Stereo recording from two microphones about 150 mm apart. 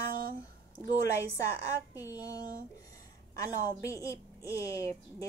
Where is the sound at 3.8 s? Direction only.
20° left (ahead or behind).